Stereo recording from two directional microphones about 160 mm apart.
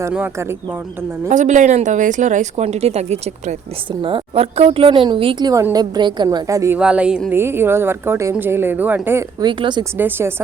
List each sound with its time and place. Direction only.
0.1 s speech: 15° right (ahead or behind)
1.3 s a woman's voice: 50° right (ahead or behind); by 6.7 s 20° right (ahead or behind)
6.7 s speech: 5° right (ahead or behind)
9.4 s a woman's voice: 30° right (ahead or behind)
10.0 s speech: 15° right (ahead or behind)